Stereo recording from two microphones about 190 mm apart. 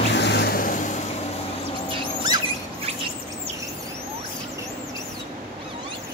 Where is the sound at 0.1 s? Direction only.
65° left (ahead or behind); by 1.0 s 40° left (ahead or behind).